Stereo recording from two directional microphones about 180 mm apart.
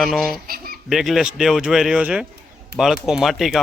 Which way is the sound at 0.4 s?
55° right (ahead or behind).